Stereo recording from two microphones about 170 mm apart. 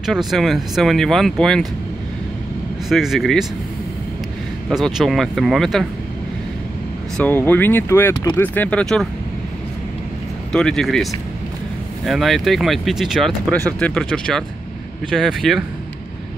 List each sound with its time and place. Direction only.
0.0 s speech: centre (ahead or behind)
2.9 s speech: centre (ahead or behind)
4.6 s speech: centre (ahead or behind)
7.2 s speech: 10° left (ahead or behind)
10.5 s speech: 5° left (ahead or behind)
12.1 s speech: centre (ahead or behind)